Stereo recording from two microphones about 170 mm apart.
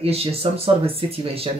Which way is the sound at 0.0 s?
35° right (ahead or behind).